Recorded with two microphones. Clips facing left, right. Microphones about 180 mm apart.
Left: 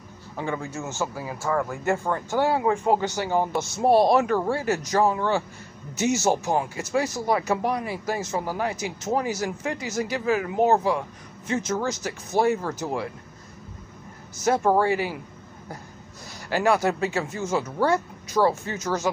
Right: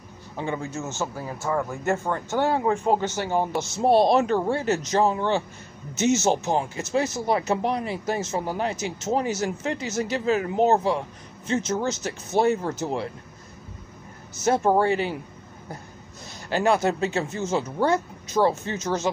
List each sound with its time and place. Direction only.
0.4 s speech: 20° right (ahead or behind)
1.0 s speech: 5° left (ahead or behind)
1.5 s speech: 5° right (ahead or behind)
2.3 s speech: 10° left (ahead or behind)
3.7 s speech: 25° right (ahead or behind)
14.4 s speech: 25° right (ahead or behind)
16.4 s speech: 20° right (ahead or behind)